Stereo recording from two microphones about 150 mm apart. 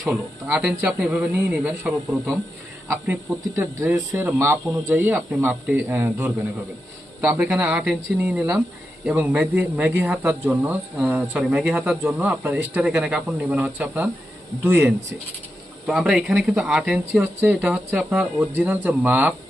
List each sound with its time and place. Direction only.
0.0 s speech: 10° right (ahead or behind)
15.9 s speech: centre (ahead or behind)